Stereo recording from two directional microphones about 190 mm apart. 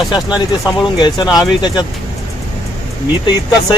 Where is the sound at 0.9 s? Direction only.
20° left (ahead or behind).